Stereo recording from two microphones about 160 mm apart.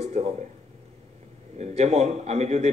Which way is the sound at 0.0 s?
40° right (ahead or behind).